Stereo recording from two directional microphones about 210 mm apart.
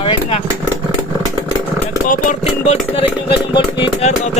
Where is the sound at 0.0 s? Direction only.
25° left (ahead or behind).